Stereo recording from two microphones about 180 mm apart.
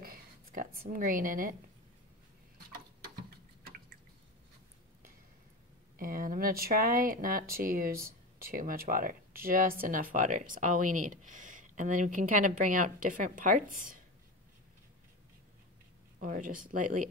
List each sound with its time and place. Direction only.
0.0 s a sound: 55° right (ahead or behind)
0.8 s speech: 50° right (ahead or behind)
5.9 s speech: 50° right (ahead or behind)
16.2 s speech: 50° right (ahead or behind)